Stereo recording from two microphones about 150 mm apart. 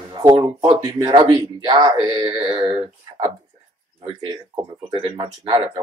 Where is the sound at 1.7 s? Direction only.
35° right (ahead or behind).